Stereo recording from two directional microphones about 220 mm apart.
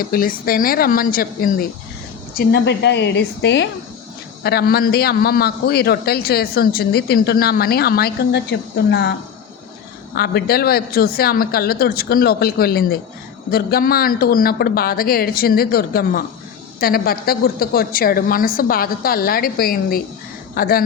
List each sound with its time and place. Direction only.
0.0 s a woman's voice: 40° left (ahead or behind)
10.2 s a man's voice: 45° left (ahead or behind)